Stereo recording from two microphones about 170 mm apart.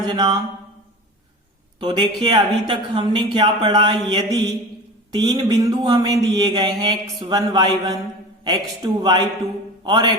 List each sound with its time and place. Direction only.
0.0 s speech: 25° right (ahead or behind)
1.8 s speech: 25° right (ahead or behind)